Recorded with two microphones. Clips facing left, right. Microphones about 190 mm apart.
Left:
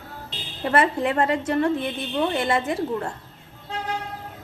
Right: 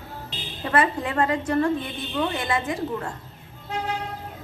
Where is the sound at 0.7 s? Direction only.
25° left (ahead or behind).